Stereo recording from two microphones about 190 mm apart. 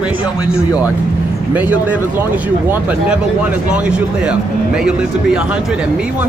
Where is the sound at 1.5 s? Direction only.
5° right (ahead or behind).